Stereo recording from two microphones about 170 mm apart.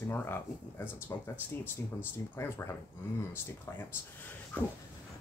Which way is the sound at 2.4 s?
15° left (ahead or behind).